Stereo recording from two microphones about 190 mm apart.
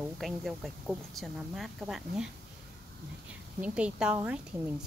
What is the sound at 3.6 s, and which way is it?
Speech, 5° right (ahead or behind).